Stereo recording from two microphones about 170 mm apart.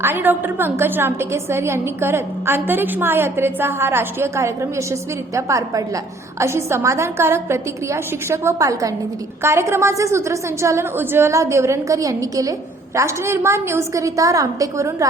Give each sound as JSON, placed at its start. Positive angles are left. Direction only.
{"t": 0.0, "sound": "a woman's voice", "side_deg": -10}